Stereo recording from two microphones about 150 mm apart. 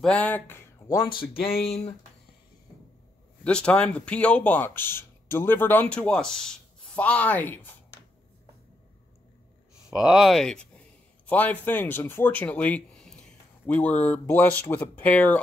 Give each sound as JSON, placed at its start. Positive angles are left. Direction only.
{"t": 0.0, "sound": "speech", "side_deg": 10}
{"t": 1.6, "sound": "speech", "side_deg": 40}
{"t": 3.4, "sound": "speech", "side_deg": 5}
{"t": 9.8, "sound": "speech", "side_deg": -5}